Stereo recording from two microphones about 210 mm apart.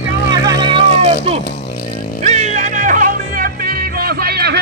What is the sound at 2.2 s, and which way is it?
Music, 35° right (ahead or behind).